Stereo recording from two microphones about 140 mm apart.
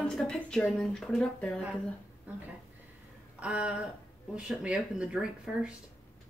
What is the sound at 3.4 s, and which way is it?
A woman's voice, 10° right (ahead or behind).